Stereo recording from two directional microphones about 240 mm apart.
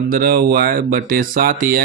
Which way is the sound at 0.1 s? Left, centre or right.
Right.